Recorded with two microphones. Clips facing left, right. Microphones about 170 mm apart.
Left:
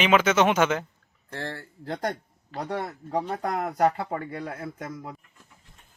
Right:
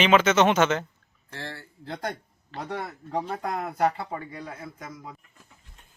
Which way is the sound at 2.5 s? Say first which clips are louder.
Left 3 dB; 10° left (ahead or behind).